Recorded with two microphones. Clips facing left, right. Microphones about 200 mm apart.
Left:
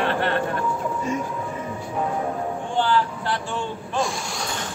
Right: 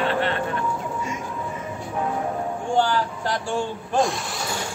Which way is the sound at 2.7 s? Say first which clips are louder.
Even; 45° right (ahead or behind).